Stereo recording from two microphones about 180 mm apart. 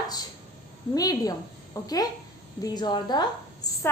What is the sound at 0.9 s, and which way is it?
A woman's voice, 20° left (ahead or behind).